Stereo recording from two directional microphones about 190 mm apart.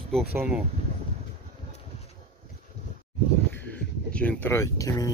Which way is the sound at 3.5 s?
10° left (ahead or behind).